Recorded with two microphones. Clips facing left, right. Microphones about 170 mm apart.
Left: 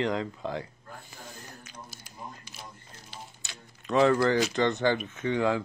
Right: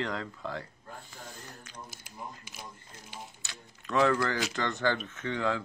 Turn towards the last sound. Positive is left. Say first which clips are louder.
# left 5 dB
turn(degrees=15)  # may be behind; listen again after turning